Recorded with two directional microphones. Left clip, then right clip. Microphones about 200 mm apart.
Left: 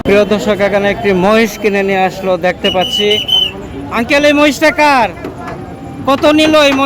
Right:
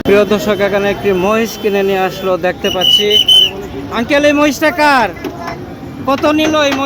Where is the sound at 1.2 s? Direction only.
15° left (ahead or behind).